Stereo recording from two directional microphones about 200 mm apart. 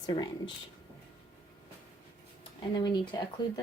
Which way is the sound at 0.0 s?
20° left (ahead or behind).